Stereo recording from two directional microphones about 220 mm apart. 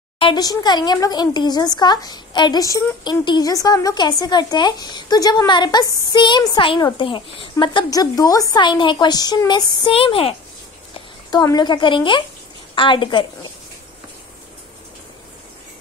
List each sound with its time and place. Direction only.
0.2 s a woman's voice: 20° left (ahead or behind)